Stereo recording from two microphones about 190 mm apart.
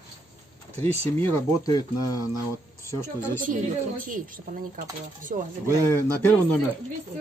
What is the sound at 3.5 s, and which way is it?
A woman's voice, 45° right (ahead or behind).